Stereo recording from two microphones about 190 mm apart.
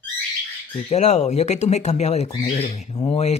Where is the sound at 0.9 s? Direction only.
35° left (ahead or behind).